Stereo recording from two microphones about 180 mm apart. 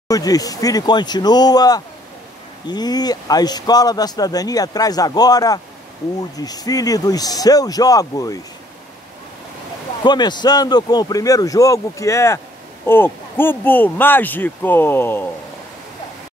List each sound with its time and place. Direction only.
0.1 s speech: 20° left (ahead or behind)
10.0 s speech: 25° left (ahead or behind)